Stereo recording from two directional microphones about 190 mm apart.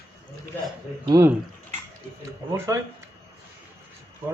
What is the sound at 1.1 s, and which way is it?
Speech, 15° right (ahead or behind).